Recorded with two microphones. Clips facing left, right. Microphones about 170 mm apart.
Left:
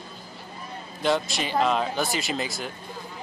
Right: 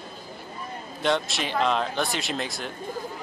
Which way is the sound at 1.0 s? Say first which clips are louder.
Left 1 dB; centre (ahead or behind).